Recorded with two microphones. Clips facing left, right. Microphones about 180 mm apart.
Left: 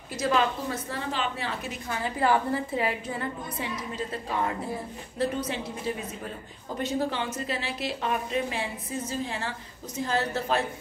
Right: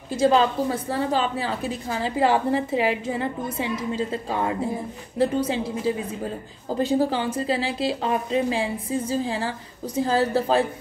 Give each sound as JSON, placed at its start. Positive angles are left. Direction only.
{"t": 0.1, "sound": "a woman's voice", "side_deg": -30}